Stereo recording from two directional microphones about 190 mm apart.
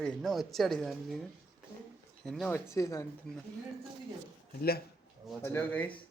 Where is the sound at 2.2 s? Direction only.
Centre (ahead or behind).